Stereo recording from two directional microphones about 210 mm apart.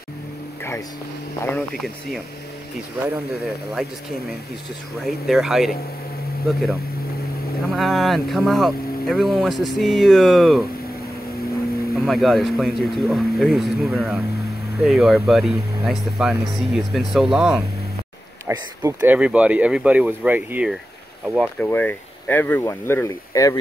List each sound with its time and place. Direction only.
1.4 s speech: 5° left (ahead or behind)
5.0 s speech: centre (ahead or behind)
11.9 s speech: centre (ahead or behind)
18.5 s speech: 20° right (ahead or behind)
18.9 s speech: 5° right (ahead or behind)
21.4 s speech: 5° left (ahead or behind)